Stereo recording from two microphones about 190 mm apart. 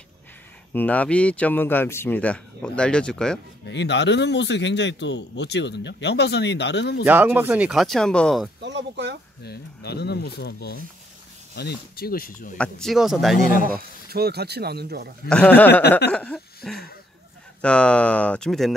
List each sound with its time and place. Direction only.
0.7 s speech: 10° left (ahead or behind)
3.6 s speech: 65° left (ahead or behind)
7.1 s speech: 10° right (ahead or behind)
8.5 s speech: 65° right (ahead or behind)
9.4 s speech: 60° left (ahead or behind)
12.5 s speech: 5° left (ahead or behind)
13.6 s speech: 50° right (ahead or behind)
15.2 s speech: 5° left (ahead or behind)